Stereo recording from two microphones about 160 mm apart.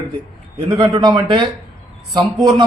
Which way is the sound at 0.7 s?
25° right (ahead or behind).